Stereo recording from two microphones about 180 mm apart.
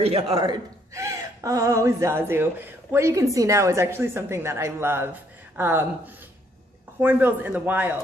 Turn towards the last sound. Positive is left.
turn(degrees=-10)  # may be behind; listen again after turning